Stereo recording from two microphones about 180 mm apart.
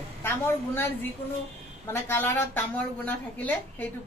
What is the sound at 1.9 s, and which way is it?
A woman's voice, 15° left (ahead or behind).